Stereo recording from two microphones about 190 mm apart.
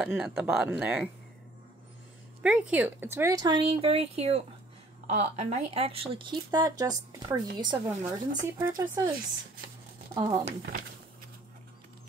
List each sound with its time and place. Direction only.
0.0 s speech: centre (ahead or behind)
2.4 s a woman's voice: 5° right (ahead or behind); by 7.8 s 25° right (ahead or behind)
8.0 s speech: 40° right (ahead or behind)
8.5 s a woman's voice: 15° right (ahead or behind)
10.1 s a woman's voice: 25° right (ahead or behind)